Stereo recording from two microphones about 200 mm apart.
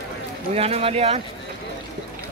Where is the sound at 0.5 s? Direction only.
30° right (ahead or behind).